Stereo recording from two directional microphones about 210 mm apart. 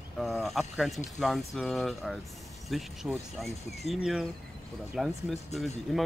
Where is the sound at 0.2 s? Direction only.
Centre (ahead or behind).